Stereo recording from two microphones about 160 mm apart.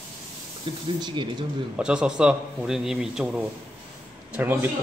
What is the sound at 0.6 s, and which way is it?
Speech, 30° right (ahead or behind).